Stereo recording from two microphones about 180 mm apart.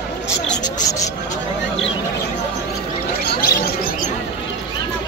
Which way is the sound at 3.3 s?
60° left (ahead or behind).